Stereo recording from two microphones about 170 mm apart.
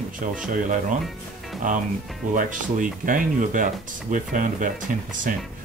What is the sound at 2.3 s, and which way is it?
Speech, 50° right (ahead or behind).